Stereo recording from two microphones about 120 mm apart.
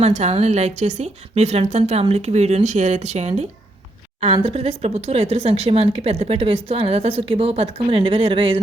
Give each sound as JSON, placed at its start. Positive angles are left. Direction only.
{"t": 0.0, "sound": "a woman's voice", "side_deg": -65}
{"t": 4.4, "sound": "speech", "side_deg": -60}